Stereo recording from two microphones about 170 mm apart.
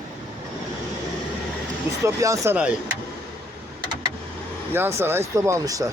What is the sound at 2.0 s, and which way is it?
Speech, 20° right (ahead or behind).